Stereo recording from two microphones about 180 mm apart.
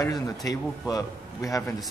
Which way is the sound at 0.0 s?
20° left (ahead or behind).